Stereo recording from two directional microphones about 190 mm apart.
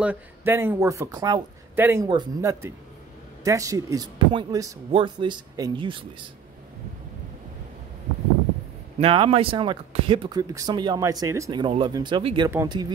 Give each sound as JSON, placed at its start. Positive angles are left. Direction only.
{"t": 0.0, "sound": "speech", "side_deg": -10}
{"t": 9.0, "sound": "speech", "side_deg": -30}
{"t": 12.4, "sound": "speech", "side_deg": -15}